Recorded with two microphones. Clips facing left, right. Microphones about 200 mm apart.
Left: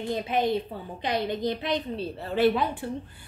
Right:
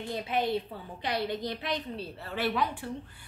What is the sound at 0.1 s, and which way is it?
A woman's voice, 20° left (ahead or behind).